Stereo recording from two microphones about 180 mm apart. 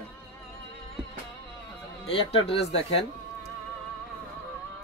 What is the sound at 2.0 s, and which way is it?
Speech, 30° left (ahead or behind).